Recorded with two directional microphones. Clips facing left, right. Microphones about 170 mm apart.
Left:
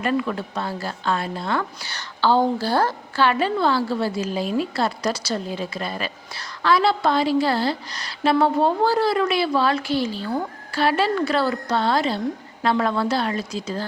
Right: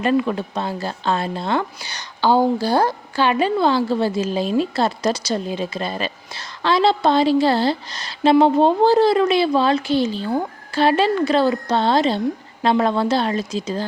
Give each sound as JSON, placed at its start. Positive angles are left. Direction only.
{"t": 0.0, "sound": "speech", "side_deg": -20}